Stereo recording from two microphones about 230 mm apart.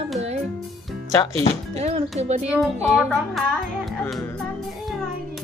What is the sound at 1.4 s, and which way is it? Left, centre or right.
Speech, right.